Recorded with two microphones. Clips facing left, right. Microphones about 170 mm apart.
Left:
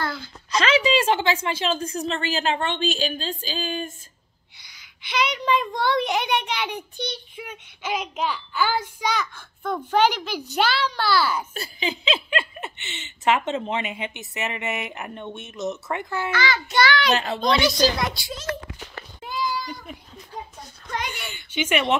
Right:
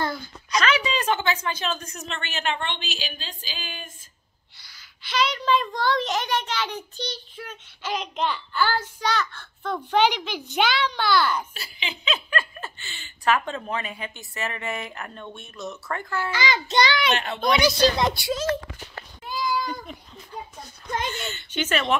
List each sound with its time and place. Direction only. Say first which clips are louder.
0.5 s a woman's voice: left 3 dB; 30° left (ahead or behind)
5.1 s a child's voice: even; 15° left (ahead or behind)
11.5 s speech: left 8 dB; 40° left (ahead or behind); by 16.3 s 15° left (ahead or behind)
16.3 s a child's voice: left 1 dB; 15° right (ahead or behind)
17.1 s a woman's voice: left 3 dB; 40° left (ahead or behind)
17.5 s speech: even; 25° left (ahead or behind)
17.7 s a child's voice: right 1 dB; 25° right (ahead or behind)
18.2 s a child's voice: right 9 dB; 90° right
19.5 s cat: right 3 dB; 50° right (ahead or behind)
21.1 s a woman's voice: right 2 dB; 10° left (ahead or behind)